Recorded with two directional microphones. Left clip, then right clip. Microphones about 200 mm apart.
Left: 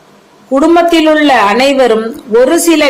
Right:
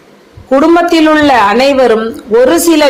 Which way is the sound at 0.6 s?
15° right (ahead or behind).